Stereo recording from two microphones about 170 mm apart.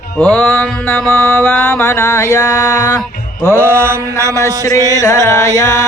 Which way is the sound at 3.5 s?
15° right (ahead or behind).